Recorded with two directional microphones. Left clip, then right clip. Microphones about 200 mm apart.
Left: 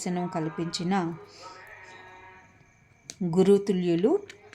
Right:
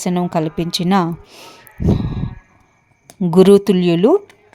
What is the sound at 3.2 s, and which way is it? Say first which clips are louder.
Speech: right 12 dB; 40° right (ahead or behind).